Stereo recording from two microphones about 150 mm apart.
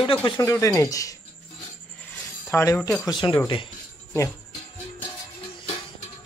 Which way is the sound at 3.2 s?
25° left (ahead or behind).